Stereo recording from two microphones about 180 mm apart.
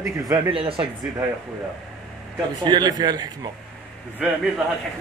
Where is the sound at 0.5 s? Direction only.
30° right (ahead or behind).